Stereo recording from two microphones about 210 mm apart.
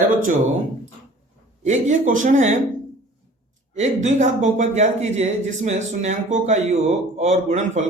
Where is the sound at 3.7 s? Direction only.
35° right (ahead or behind).